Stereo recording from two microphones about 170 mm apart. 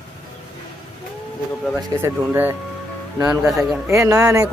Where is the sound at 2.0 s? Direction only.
10° right (ahead or behind).